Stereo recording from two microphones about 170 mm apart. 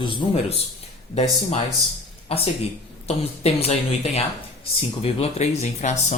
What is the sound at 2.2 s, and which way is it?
Speech, 35° left (ahead or behind).